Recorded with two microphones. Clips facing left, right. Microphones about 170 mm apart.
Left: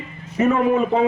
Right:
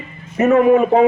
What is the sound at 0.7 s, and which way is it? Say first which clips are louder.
Speech: right 6 dB; 55° right (ahead or behind).